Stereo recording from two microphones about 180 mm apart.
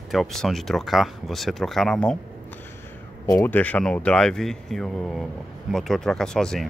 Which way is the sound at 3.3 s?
15° left (ahead or behind).